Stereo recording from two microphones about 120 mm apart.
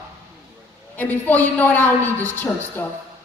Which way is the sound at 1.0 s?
15° left (ahead or behind).